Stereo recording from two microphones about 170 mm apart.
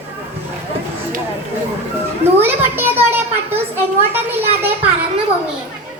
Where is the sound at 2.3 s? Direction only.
10° right (ahead or behind).